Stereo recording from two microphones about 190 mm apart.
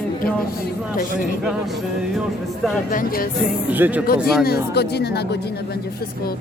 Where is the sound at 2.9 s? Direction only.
50° left (ahead or behind).